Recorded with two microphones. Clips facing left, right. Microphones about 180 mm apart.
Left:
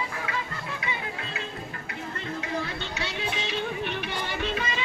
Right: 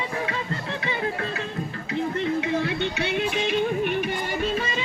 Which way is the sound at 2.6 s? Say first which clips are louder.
Right 7 dB; 65° right (ahead or behind).